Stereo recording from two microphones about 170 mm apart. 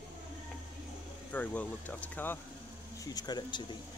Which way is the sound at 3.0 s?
20° left (ahead or behind).